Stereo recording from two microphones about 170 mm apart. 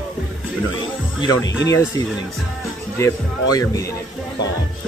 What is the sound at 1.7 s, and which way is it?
Speech, 20° left (ahead or behind).